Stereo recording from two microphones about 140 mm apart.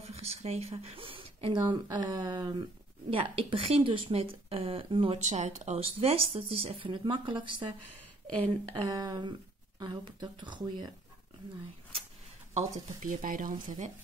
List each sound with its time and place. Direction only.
0.0 s a woman's voice: 45° right (ahead or behind)
5.2 s speech: 55° right (ahead or behind); by 7.7 s 35° right (ahead or behind)
8.7 s a woman's voice: 30° right (ahead or behind)
12.5 s speech: 65° right (ahead or behind)